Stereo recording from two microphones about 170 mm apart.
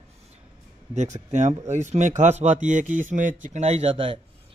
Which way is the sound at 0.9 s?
45° right (ahead or behind).